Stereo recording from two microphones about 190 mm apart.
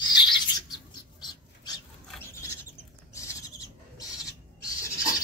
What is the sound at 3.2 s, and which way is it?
Owl, 15° left (ahead or behind).